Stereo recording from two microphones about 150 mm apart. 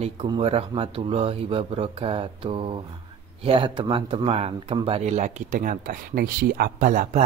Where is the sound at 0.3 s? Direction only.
40° right (ahead or behind).